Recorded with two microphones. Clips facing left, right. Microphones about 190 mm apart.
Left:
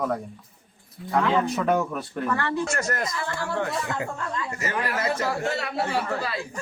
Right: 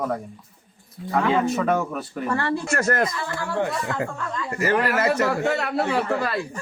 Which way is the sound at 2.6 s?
55° right (ahead or behind).